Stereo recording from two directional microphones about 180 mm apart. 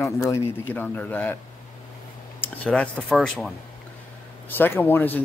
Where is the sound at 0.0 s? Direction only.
15° left (ahead or behind).